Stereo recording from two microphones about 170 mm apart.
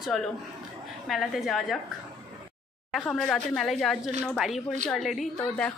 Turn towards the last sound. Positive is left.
turn(degrees=0)  # may be behind; listen again after turning